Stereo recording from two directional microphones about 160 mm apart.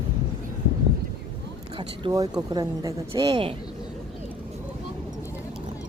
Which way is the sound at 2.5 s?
25° right (ahead or behind).